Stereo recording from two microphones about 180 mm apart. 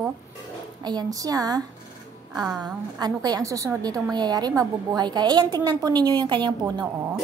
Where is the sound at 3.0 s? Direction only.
20° right (ahead or behind).